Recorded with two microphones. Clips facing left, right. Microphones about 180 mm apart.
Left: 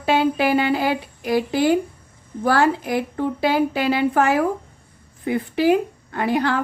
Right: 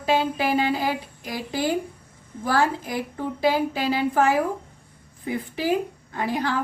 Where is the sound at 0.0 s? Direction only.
70° left (ahead or behind).